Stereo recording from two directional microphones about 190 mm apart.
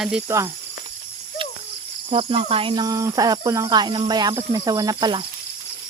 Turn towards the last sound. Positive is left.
turn(degrees=-20)  # may be behind; listen again after turning